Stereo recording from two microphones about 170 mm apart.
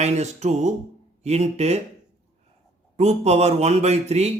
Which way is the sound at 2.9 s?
40° right (ahead or behind).